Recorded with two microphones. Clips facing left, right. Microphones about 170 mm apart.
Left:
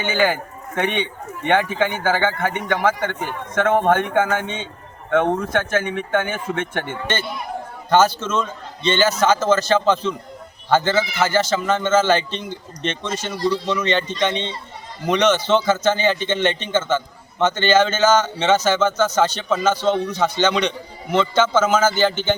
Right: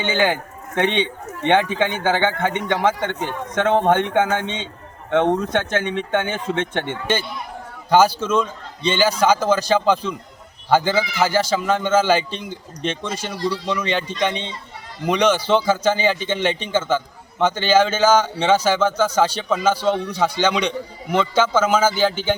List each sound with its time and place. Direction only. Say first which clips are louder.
0.0 s a man's voice: even; 20° right (ahead or behind)
7.9 s a man's voice: right 1 dB; 10° right (ahead or behind)